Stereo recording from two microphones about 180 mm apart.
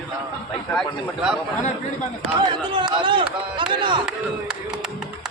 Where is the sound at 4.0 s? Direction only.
5° right (ahead or behind).